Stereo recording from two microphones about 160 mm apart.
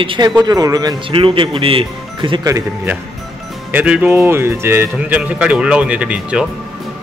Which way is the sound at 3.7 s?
10° right (ahead or behind).